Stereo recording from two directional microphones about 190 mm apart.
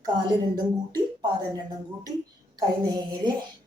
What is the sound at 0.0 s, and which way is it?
Speech, 20° right (ahead or behind).